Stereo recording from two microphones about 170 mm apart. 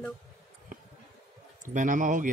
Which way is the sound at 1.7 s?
50° right (ahead or behind).